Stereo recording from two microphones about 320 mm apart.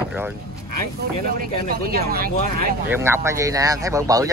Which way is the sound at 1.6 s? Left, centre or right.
Right.